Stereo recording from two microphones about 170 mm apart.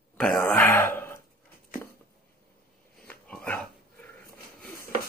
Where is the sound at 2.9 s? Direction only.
5° left (ahead or behind).